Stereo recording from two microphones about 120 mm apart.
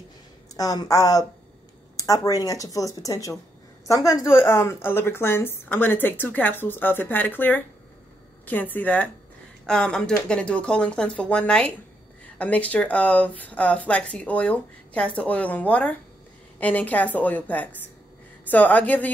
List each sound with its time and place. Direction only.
0.6 s a woman's voice: 30° left (ahead or behind); by 19.0 s 15° left (ahead or behind)